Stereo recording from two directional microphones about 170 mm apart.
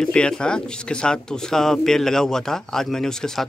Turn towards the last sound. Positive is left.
turn(degrees=5)  # may be behind; listen again after turning